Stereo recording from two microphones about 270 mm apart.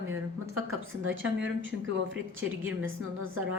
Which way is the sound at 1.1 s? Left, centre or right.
Right.